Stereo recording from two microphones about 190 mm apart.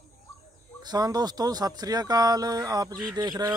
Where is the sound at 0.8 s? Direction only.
20° right (ahead or behind).